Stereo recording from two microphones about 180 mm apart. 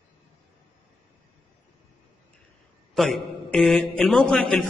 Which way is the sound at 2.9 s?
Centre (ahead or behind).